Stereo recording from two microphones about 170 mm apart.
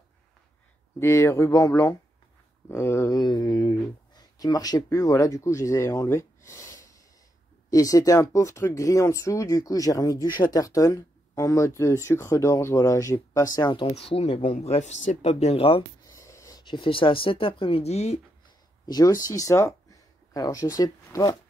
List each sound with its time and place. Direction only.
0.9 s speech: 15° left (ahead or behind); by 15.8 s 35° left (ahead or behind)
16.1 s speech: 20° left (ahead or behind); by 18.2 s 40° left (ahead or behind)
18.9 s speech: 20° left (ahead or behind)